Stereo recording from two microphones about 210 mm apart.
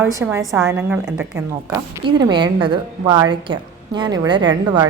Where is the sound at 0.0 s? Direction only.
10° right (ahead or behind).